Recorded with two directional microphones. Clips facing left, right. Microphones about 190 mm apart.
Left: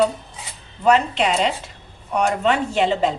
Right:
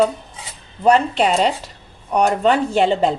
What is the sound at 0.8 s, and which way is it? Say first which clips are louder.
A woman's voice: right 2 dB; 40° right (ahead or behind).